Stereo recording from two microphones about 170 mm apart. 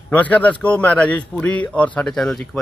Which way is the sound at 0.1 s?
10° left (ahead or behind).